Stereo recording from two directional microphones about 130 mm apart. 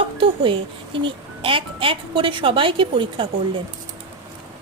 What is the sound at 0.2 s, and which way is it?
Speech, 40° right (ahead or behind).